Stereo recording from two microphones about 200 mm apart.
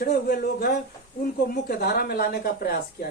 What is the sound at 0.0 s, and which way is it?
Speech, 50° left (ahead or behind).